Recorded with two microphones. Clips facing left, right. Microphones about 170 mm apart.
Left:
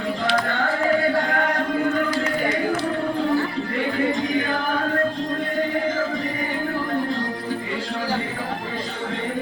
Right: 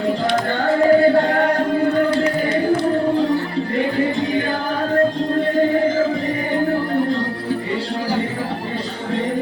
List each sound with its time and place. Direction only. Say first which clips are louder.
0.6 s music: right 10 dB; 35° right (ahead or behind)